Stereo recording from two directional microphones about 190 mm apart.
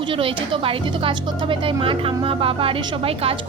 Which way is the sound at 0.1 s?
30° right (ahead or behind).